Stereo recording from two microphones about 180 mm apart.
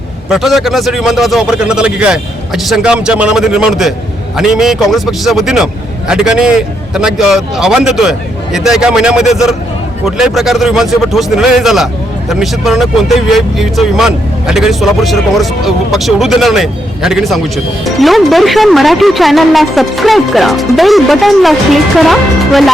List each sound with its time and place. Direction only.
0.3 s speech: centre (ahead or behind)